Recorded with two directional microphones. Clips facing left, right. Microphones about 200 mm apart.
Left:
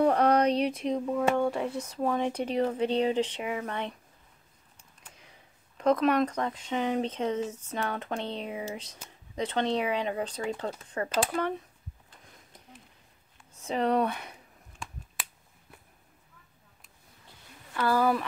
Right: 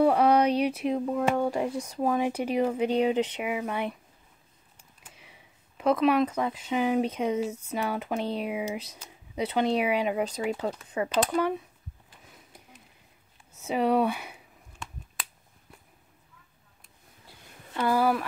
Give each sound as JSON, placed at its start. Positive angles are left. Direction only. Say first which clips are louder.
{"t": 0.0, "sound": "speech", "louder": "right 2 dB", "side_deg": -5}
{"t": 5.1, "sound": "speech", "louder": "right 1 dB", "side_deg": -5}
{"t": 13.5, "sound": "speech", "louder": "right 2 dB", "side_deg": -5}
{"t": 17.7, "sound": "speech", "louder": "right 1 dB", "side_deg": -15}